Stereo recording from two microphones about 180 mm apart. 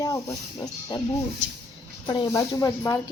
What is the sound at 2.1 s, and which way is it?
Speech, 25° left (ahead or behind).